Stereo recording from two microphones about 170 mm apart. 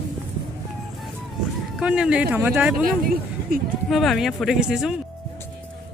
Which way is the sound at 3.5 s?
60° right (ahead or behind).